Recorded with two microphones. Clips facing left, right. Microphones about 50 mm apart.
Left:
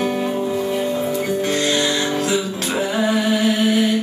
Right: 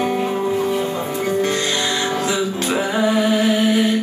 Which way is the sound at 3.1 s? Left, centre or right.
Centre.